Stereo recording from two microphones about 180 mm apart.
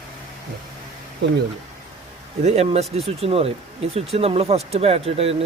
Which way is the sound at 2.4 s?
35° right (ahead or behind).